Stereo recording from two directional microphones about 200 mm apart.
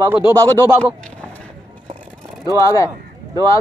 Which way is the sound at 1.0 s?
5° left (ahead or behind).